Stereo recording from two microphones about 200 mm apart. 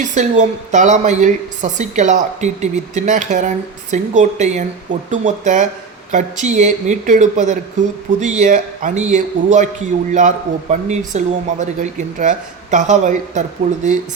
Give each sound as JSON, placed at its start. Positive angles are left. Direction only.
{"t": 0.0, "sound": "speech", "side_deg": -40}